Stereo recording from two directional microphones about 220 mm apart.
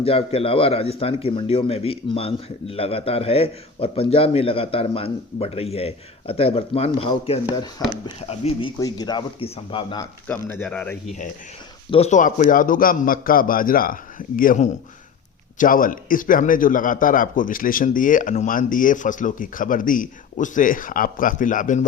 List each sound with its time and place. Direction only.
0.0 s speech: 25° left (ahead or behind)
10.2 s speech: 10° left (ahead or behind)
11.9 s speech: 30° left (ahead or behind)